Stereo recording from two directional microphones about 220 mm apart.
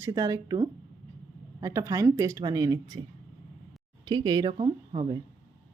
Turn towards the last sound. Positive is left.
turn(degrees=-20)  # may be behind; listen again after turning